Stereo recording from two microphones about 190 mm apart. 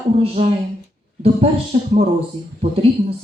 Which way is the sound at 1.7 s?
35° right (ahead or behind).